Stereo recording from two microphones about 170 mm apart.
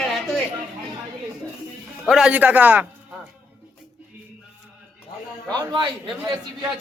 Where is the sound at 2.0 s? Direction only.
5° right (ahead or behind).